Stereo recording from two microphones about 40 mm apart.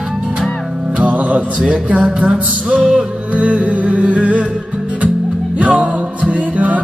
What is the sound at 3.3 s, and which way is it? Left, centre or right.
Music, right.